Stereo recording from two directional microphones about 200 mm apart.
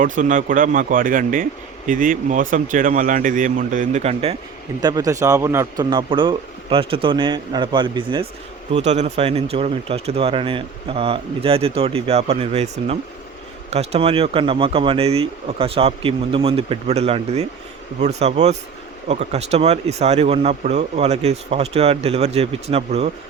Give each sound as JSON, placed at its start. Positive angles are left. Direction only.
{"t": 0.0, "sound": "speech", "side_deg": -40}
{"t": 4.8, "sound": "speech", "side_deg": -20}
{"t": 8.7, "sound": "speech", "side_deg": -35}